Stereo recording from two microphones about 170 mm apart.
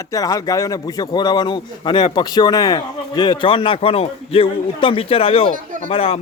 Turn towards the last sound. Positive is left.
turn(degrees=35)  # may be behind; listen again after turning